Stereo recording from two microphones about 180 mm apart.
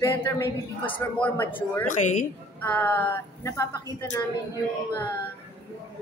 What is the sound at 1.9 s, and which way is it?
Speech, 45° left (ahead or behind).